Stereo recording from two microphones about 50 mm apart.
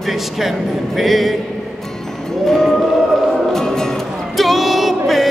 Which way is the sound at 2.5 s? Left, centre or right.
Centre.